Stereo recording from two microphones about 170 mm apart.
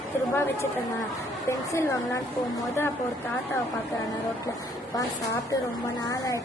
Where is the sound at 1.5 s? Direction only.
15° left (ahead or behind).